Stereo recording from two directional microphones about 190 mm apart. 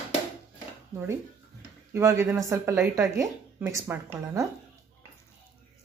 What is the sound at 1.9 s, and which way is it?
A woman's voice, 15° right (ahead or behind).